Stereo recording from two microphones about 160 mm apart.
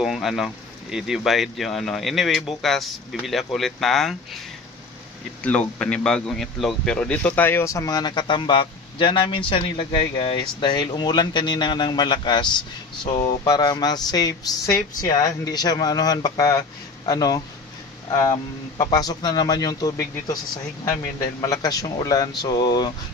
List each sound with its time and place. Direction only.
0.0 s speech: centre (ahead or behind)
5.4 s a man's voice: 10° left (ahead or behind)
18.9 s a man's voice: 25° left (ahead or behind)